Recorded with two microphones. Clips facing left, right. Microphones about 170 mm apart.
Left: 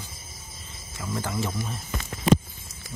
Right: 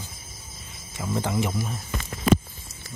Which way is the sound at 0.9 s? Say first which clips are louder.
Right 4 dB; 20° right (ahead or behind).